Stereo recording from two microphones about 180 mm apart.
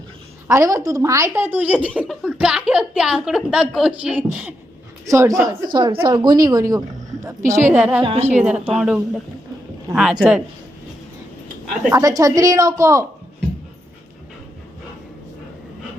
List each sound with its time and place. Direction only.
0.4 s a woman's voice: 15° right (ahead or behind)
5.7 s a woman's voice: 25° right (ahead or behind); by 8.0 s 5° right (ahead or behind)
8.0 s a woman's voice: 35° right (ahead or behind)
8.3 s speech: 5° right (ahead or behind)
11.9 s a woman's voice: 15° right (ahead or behind)